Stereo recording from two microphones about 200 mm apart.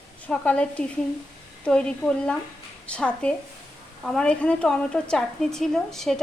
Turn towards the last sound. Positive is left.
turn(degrees=0)  # may be behind; listen again after turning